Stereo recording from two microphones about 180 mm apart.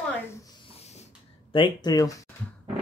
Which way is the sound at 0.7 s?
35° left (ahead or behind).